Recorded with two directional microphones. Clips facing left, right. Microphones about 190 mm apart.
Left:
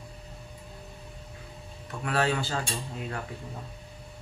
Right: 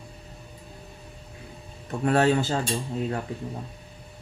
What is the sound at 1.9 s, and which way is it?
Speech, 40° right (ahead or behind).